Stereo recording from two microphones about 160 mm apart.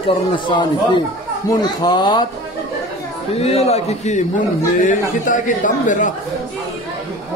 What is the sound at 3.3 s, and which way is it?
A man's voice, 40° left (ahead or behind).